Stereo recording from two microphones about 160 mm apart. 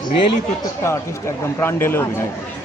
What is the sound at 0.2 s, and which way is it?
Speech, 30° left (ahead or behind).